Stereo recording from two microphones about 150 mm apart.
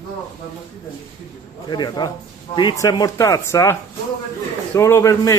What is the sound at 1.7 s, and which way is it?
Speech, 30° left (ahead or behind).